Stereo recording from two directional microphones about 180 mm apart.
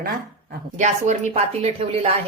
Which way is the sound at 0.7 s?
40° right (ahead or behind).